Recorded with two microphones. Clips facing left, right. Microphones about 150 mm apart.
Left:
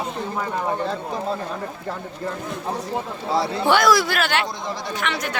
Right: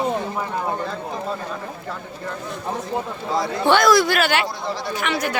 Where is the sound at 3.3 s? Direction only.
30° left (ahead or behind).